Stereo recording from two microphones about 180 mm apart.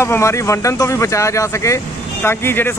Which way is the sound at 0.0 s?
15° left (ahead or behind).